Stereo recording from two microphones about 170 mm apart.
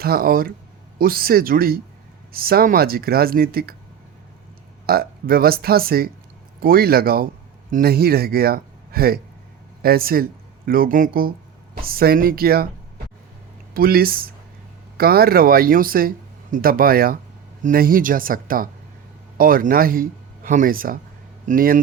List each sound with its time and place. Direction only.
0.0 s speech: 65° right (ahead or behind)
4.9 s speech: 60° right (ahead or behind)
13.7 s speech: 60° right (ahead or behind)